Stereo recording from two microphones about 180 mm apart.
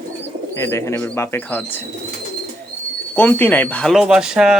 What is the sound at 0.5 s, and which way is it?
Speech, 15° left (ahead or behind).